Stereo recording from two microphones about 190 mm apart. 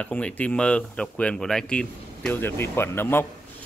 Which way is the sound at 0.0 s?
5° left (ahead or behind).